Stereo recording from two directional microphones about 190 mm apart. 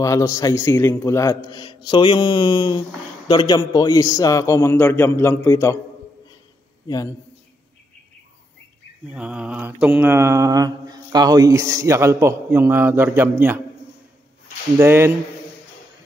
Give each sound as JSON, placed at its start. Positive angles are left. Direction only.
{"t": 0.0, "sound": "a man's voice", "side_deg": 15}
{"t": 9.1, "sound": "mantra", "side_deg": -5}
{"t": 14.8, "sound": "mantra", "side_deg": -10}